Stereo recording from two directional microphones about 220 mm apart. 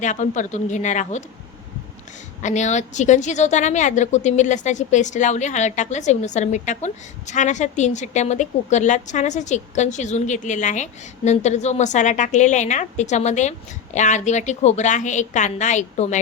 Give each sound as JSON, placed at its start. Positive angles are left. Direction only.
{"t": 0.0, "sound": "a woman's voice", "side_deg": 35}
{"t": 2.4, "sound": "a woman's voice", "side_deg": 35}